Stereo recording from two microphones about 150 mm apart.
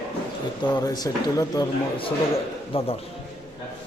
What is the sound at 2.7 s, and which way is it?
Speech, 35° left (ahead or behind).